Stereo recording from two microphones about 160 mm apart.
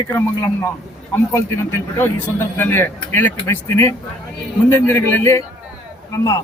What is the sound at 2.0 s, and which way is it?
Speech, 15° left (ahead or behind).